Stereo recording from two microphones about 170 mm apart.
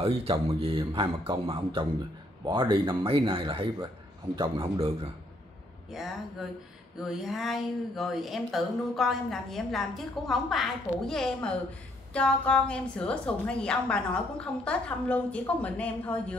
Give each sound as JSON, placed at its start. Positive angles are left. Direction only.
{"t": 0.0, "sound": "a man's voice", "side_deg": -35}
{"t": 5.9, "sound": "a woman's voice", "side_deg": 0}